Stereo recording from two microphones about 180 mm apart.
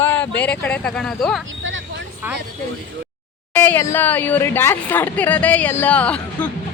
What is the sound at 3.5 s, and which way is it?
A woman's voice, 10° left (ahead or behind).